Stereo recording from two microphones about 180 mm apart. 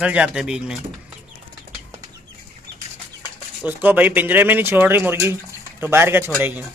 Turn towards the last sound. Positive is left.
turn(degrees=-10)  # may be behind; listen again after turning